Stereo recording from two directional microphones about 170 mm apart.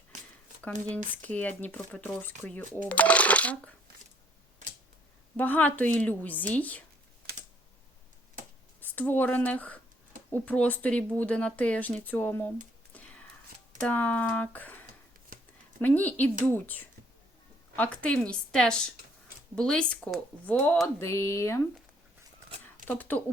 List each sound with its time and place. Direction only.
0.1 s a sound: 45° right (ahead or behind)
1.2 s speech: 10° left (ahead or behind)
5.4 s speech: 10° left (ahead or behind)
8.8 s speech: 10° left (ahead or behind)
13.8 s speech: 10° left (ahead or behind)
22.9 s speech: 10° left (ahead or behind)